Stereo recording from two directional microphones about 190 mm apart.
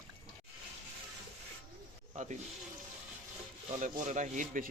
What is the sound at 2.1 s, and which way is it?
Speech, 40° right (ahead or behind).